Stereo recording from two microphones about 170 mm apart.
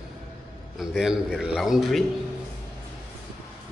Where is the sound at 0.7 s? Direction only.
5° right (ahead or behind).